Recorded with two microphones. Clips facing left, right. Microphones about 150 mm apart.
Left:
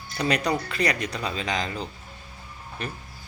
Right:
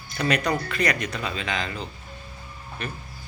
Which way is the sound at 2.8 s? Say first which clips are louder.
Even; 35° left (ahead or behind).